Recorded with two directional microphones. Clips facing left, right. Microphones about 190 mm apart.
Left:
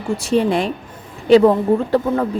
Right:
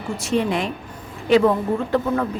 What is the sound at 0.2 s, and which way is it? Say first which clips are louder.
Speech: left 4 dB; 30° left (ahead or behind).